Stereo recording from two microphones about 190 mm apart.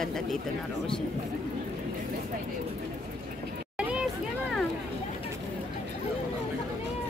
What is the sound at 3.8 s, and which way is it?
Vehicle, 5° right (ahead or behind).